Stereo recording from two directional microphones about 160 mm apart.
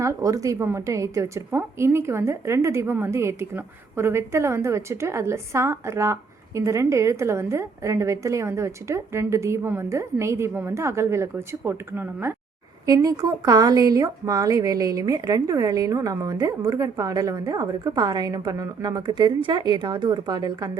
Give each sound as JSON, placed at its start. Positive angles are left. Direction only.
{"t": 0.0, "sound": "a woman's voice", "side_deg": -20}